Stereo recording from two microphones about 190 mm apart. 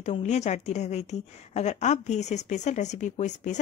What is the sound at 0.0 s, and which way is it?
A woman's voice, 35° left (ahead or behind).